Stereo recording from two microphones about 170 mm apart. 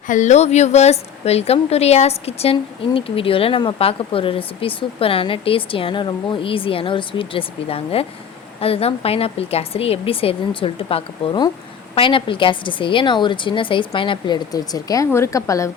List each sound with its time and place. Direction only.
0.1 s a woman's voice: 45° left (ahead or behind); by 15.7 s 20° left (ahead or behind)